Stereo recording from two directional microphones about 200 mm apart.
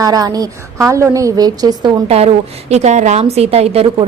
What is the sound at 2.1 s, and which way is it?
A woman's voice, 30° right (ahead or behind).